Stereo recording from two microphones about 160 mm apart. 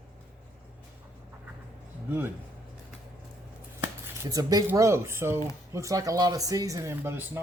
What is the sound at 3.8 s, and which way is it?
Speech, 15° right (ahead or behind).